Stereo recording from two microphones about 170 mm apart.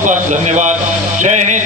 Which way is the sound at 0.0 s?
45° right (ahead or behind).